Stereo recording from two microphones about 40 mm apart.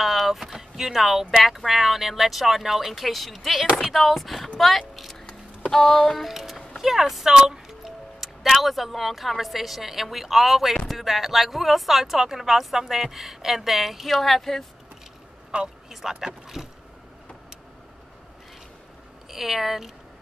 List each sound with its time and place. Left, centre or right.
0.0 s speech: centre
5.7 s a sound: centre
6.2 s speech: centre
7.3 s music: centre
8.2 s speech: centre
15.5 s speech: right
15.9 s speech: centre
16.6 s vehicle: centre
19.3 s speech: centre